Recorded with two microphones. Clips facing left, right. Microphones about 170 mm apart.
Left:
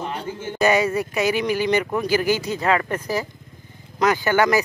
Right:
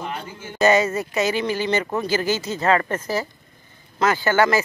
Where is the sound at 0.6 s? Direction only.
10° left (ahead or behind).